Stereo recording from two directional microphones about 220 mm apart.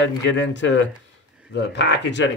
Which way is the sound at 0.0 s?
55° left (ahead or behind).